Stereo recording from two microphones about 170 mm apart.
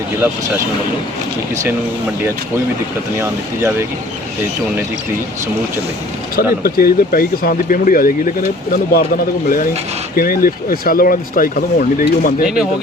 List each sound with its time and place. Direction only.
3.2 s speech: 15° right (ahead or behind)
6.6 s speech: 65° left (ahead or behind)
10.2 s speech: 55° left (ahead or behind)
12.4 s speech: 5° right (ahead or behind)